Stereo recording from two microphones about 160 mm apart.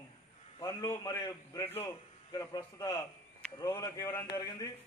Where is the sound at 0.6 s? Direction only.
25° left (ahead or behind).